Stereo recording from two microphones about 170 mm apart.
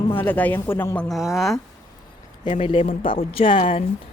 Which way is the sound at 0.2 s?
10° left (ahead or behind).